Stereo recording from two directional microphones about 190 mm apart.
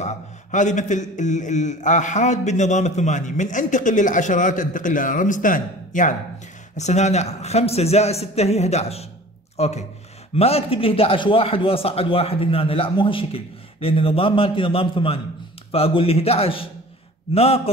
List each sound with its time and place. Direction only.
0.0 s a man's voice: 40° left (ahead or behind)